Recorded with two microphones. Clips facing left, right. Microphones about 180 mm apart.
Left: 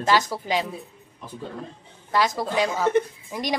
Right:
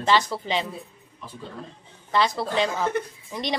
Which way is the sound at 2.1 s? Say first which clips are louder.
Even; 10° left (ahead or behind).